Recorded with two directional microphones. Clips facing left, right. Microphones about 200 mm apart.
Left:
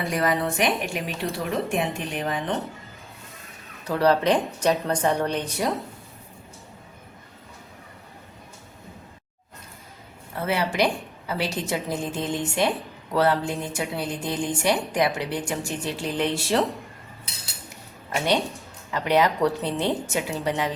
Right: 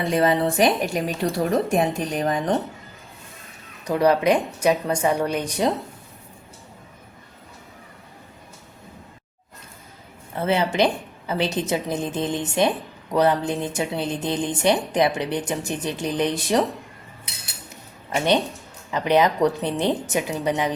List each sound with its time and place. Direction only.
0.0 s speech: 25° right (ahead or behind); by 2.6 s 40° right (ahead or behind)
3.8 s a woman's voice: 15° right (ahead or behind)
10.4 s a woman's voice: 25° right (ahead or behind)
18.9 s a woman's voice: 20° right (ahead or behind)